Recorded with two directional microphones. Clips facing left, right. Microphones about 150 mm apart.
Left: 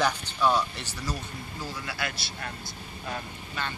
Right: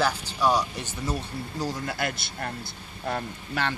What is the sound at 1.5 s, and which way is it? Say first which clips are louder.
Speech: right 6 dB; 45° right (ahead or behind).